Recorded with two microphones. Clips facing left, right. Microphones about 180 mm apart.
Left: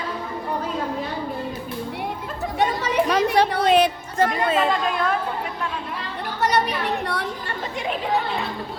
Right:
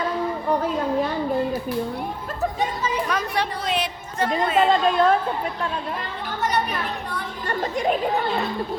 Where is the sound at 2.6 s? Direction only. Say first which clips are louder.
Left 8 dB; 70° left (ahead or behind).